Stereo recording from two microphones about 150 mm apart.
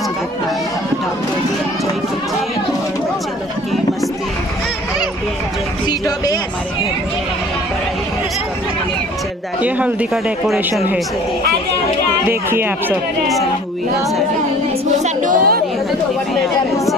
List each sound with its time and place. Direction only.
5.9 s a sound: 25° left (ahead or behind)
9.6 s speech: 10° right (ahead or behind)
12.3 s speech: 15° right (ahead or behind)
15.0 s music: 65° right (ahead or behind)